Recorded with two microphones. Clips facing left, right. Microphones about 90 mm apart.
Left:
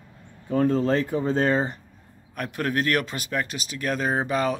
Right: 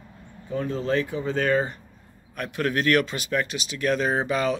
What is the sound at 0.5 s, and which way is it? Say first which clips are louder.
Speech: left 5 dB; 50° left (ahead or behind).